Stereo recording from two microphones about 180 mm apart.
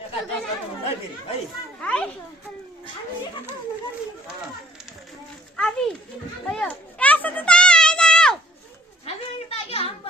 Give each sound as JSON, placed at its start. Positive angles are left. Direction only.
{"t": 1.8, "sound": "a child's voice", "side_deg": 5}
{"t": 5.5, "sound": "children playing", "side_deg": 5}
{"t": 9.6, "sound": "children playing", "side_deg": 30}